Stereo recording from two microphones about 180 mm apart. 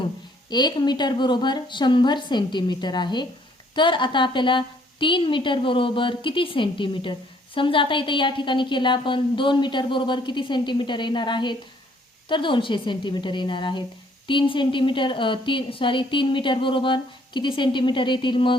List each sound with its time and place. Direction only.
0.5 s a woman's voice: 25° left (ahead or behind)